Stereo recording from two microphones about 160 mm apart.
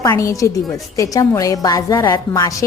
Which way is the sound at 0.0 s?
20° left (ahead or behind).